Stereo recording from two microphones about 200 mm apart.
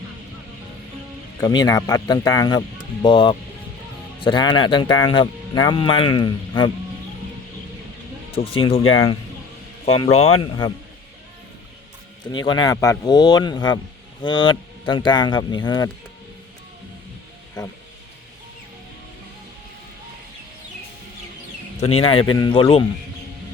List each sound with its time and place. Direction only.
1.4 s speech: 20° left (ahead or behind)
8.3 s speech: 30° left (ahead or behind)
12.2 s speech: 20° left (ahead or behind)
17.6 s speech: 20° left (ahead or behind)
21.9 s speech: 25° left (ahead or behind)